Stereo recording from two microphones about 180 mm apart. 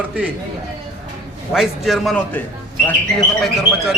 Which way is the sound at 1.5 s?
Centre (ahead or behind).